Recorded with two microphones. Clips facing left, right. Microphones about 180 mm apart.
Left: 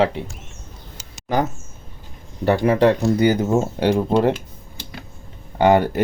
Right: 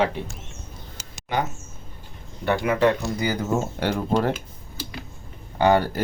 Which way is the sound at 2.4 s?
35° left (ahead or behind).